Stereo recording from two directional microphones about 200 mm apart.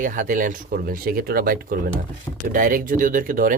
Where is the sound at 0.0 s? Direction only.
40° right (ahead or behind).